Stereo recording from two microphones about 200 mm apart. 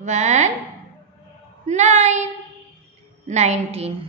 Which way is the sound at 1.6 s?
35° right (ahead or behind).